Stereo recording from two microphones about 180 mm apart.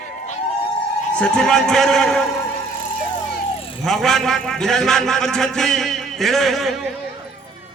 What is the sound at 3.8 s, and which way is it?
A man's voice, centre (ahead or behind).